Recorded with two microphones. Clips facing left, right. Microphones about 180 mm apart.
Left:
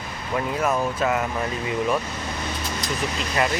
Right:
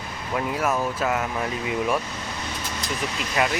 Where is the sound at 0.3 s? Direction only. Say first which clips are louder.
Left 1 dB; 5° right (ahead or behind).